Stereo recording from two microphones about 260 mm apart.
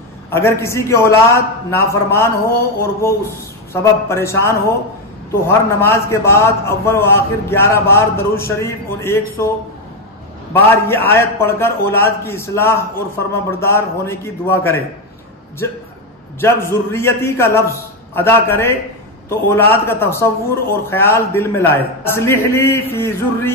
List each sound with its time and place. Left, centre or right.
0.3 s a man's voice: centre
10.5 s a man's voice: centre
16.3 s a man's voice: centre